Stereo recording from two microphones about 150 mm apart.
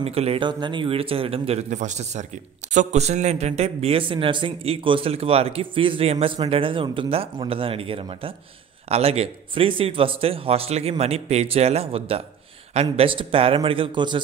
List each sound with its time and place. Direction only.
0.0 s speech: 40° right (ahead or behind)